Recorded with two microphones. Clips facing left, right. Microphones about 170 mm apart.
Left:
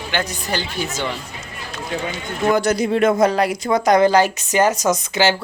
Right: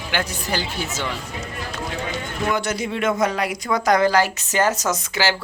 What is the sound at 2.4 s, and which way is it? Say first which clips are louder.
Speech: left 7 dB; 35° left (ahead or behind).